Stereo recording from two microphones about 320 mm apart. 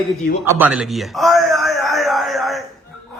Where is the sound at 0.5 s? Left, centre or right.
Centre.